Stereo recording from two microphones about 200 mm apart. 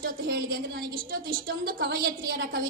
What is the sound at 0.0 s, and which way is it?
A woman's voice, 50° right (ahead or behind).